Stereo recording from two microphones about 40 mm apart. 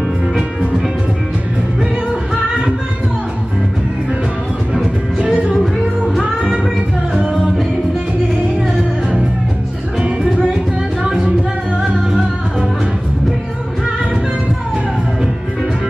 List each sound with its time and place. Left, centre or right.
5.2 s music: right